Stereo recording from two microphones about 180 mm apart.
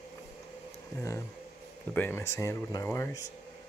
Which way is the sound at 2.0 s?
10° left (ahead or behind).